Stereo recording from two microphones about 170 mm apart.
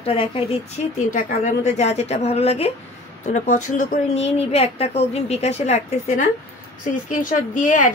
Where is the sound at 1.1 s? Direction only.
50° left (ahead or behind).